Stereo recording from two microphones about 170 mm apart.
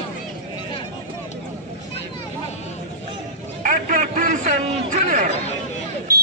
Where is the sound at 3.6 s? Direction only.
50° right (ahead or behind).